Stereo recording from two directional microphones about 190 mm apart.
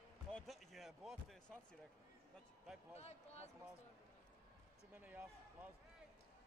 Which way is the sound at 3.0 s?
35° left (ahead or behind).